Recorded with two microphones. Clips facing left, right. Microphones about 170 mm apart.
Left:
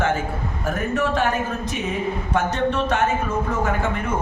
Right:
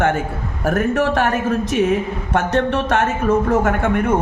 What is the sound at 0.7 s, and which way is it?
Speech, 65° right (ahead or behind).